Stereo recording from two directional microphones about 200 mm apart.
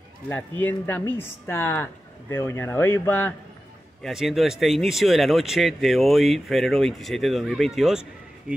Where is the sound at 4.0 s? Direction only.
Centre (ahead or behind).